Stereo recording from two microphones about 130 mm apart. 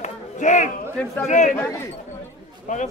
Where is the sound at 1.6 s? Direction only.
20° left (ahead or behind).